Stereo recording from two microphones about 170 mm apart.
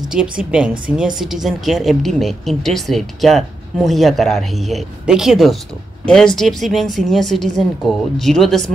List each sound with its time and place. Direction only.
0.1 s speech: 5° right (ahead or behind)